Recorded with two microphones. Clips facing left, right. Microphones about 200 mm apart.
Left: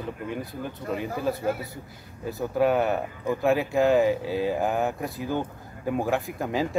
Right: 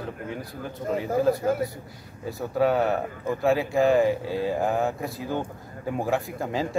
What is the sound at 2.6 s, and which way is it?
Speech, centre (ahead or behind).